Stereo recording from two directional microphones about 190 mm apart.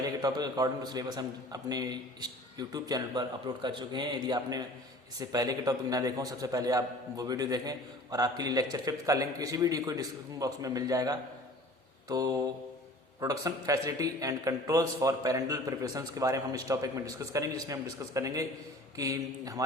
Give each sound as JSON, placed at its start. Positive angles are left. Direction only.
{"t": 0.2, "sound": "a man's voice", "side_deg": -20}